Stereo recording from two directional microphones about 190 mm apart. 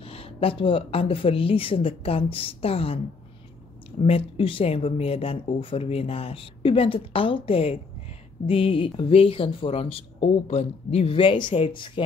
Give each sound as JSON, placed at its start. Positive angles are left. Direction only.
{"t": 0.0, "sound": "speech", "side_deg": 30}
{"t": 4.0, "sound": "speech", "side_deg": 30}